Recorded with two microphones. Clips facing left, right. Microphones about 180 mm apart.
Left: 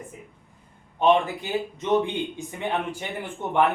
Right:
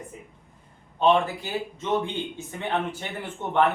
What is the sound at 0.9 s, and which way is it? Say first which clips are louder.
Speech: left 1 dB; 15° left (ahead or behind).